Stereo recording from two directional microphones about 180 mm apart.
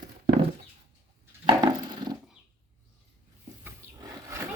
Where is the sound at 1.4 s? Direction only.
25° right (ahead or behind).